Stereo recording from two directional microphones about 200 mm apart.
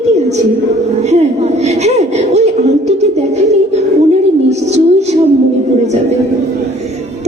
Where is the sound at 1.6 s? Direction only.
35° right (ahead or behind).